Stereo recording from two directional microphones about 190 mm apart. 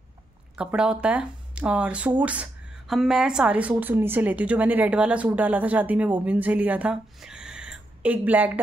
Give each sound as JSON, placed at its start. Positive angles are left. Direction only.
{"t": 0.6, "sound": "a woman's voice", "side_deg": -5}